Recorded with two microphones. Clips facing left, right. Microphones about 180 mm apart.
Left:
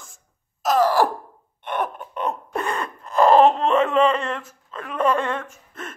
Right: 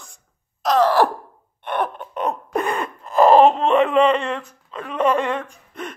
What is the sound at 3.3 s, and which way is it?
Wail, centre (ahead or behind).